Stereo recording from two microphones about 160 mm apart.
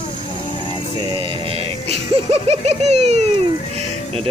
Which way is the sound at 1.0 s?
30° right (ahead or behind).